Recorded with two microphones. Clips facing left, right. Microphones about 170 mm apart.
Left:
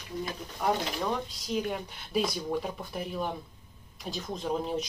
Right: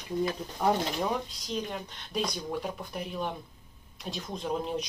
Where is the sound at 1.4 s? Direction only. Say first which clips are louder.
Left 3 dB; 10° left (ahead or behind).